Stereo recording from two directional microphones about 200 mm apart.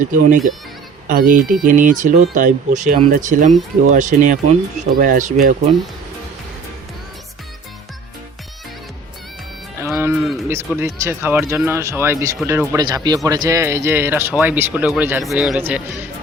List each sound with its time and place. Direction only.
0.0 s speech: 40° right (ahead or behind)
9.8 s music: 10° right (ahead or behind)
10.8 s speech: 15° right (ahead or behind)